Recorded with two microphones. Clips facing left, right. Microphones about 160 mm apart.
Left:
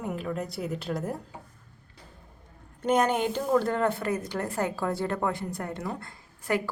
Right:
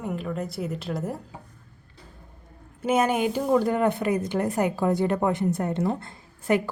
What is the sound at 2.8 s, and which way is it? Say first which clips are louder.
A woman's voice: right 2 dB; 5° right (ahead or behind).